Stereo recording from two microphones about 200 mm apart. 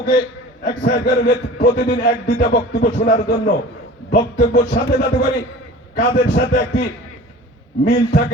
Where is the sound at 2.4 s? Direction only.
45° left (ahead or behind).